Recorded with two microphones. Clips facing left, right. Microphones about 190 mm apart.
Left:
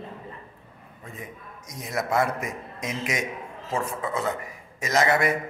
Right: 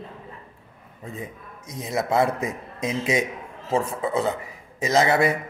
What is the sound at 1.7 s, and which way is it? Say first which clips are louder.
A man's voice: right 3 dB; 25° right (ahead or behind).